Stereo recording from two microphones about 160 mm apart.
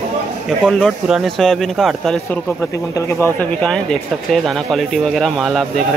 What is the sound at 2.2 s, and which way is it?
Speech, 10° left (ahead or behind).